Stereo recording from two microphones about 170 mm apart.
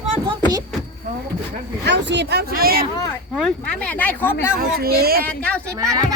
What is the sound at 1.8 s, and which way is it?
Speech, 90° right.